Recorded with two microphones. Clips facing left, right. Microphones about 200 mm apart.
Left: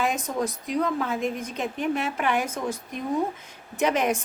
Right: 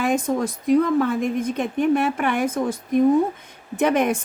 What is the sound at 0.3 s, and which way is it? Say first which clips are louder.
A woman's voice: right 8 dB; 50° right (ahead or behind).